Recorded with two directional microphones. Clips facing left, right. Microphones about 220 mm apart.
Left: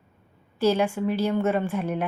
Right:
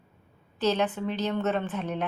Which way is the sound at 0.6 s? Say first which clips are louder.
Left 4 dB; 10° left (ahead or behind).